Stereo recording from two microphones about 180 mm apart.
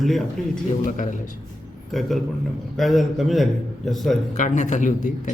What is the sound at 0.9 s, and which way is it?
Speech, 45° left (ahead or behind).